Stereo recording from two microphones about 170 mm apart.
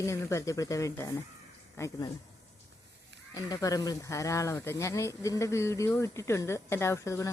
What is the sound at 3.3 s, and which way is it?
Speech, 20° left (ahead or behind).